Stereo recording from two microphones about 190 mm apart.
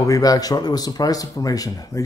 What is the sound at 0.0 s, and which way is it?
Speech, 20° left (ahead or behind).